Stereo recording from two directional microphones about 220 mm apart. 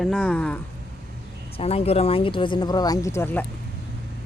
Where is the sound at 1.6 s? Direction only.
25° left (ahead or behind); by 3.4 s 10° left (ahead or behind).